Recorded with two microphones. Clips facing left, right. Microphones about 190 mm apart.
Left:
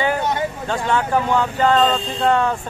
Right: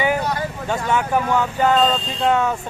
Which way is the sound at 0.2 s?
25° left (ahead or behind).